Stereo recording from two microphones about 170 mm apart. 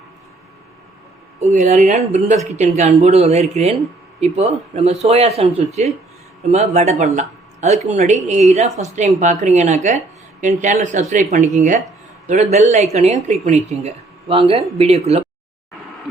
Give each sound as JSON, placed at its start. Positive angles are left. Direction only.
{"t": 1.4, "sound": "speech", "side_deg": -40}